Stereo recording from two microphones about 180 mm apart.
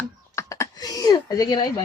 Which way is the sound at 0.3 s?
15° left (ahead or behind).